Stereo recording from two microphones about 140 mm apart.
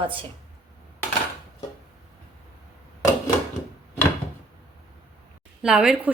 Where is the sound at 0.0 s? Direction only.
40° right (ahead or behind).